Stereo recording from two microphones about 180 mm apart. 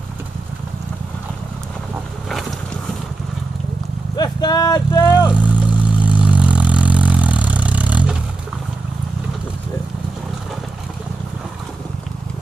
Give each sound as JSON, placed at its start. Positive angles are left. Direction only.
{"t": 4.2, "sound": "speech", "side_deg": 20}
{"t": 5.3, "sound": "vehicle", "side_deg": -5}